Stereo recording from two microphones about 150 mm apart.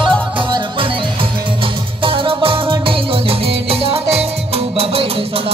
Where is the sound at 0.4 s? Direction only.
35° right (ahead or behind).